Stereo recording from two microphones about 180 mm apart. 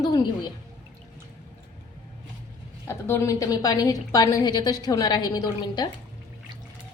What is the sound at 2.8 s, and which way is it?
A woman's voice, 15° left (ahead or behind).